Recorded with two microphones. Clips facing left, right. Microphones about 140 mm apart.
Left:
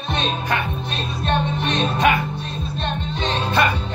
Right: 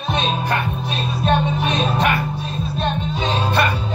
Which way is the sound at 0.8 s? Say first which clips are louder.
Right 4 dB; 10° right (ahead or behind).